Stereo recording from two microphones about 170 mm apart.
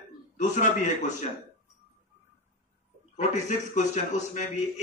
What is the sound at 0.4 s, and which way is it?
Speech, 45° left (ahead or behind).